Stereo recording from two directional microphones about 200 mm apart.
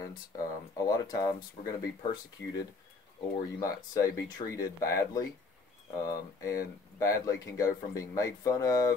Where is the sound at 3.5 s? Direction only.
15° left (ahead or behind).